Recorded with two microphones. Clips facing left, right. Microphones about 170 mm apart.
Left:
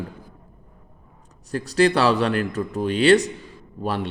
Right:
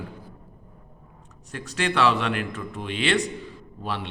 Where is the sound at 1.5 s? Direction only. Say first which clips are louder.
Left 9 dB; 35° left (ahead or behind).